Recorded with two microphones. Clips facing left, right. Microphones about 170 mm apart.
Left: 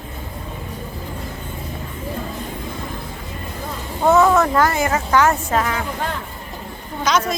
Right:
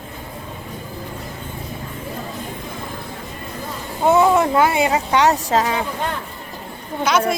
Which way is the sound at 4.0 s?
15° right (ahead or behind).